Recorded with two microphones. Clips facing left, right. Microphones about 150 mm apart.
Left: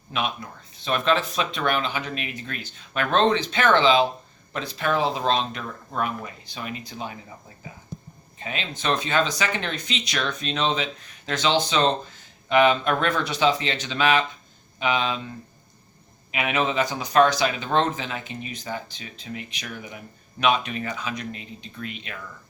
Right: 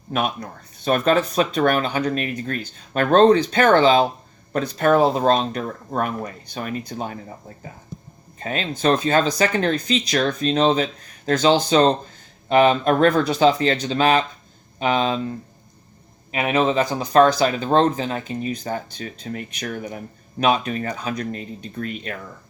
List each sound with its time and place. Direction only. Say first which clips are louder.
0.1 s speech: right 5 dB; 45° right (ahead or behind)
8.4 s speech: right 7 dB; 40° right (ahead or behind)
16.3 s speech: right 5 dB; 35° right (ahead or behind)